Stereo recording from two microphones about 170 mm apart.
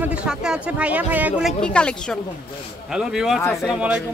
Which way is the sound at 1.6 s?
5° left (ahead or behind).